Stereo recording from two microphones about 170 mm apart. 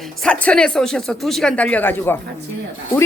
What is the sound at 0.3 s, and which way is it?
Speech, 5° left (ahead or behind).